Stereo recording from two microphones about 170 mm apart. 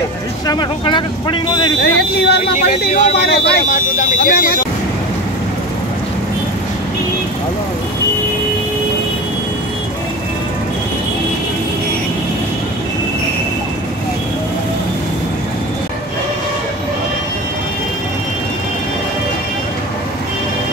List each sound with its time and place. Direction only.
0.5 s speech: 25° left (ahead or behind)
1.8 s speech: 75° left (ahead or behind)
2.9 s speech: 50° left (ahead or behind)
3.2 s speech: 70° left (ahead or behind)
3.6 s speech: 50° left (ahead or behind)